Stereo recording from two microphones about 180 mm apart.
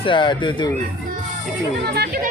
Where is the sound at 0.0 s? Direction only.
25° left (ahead or behind).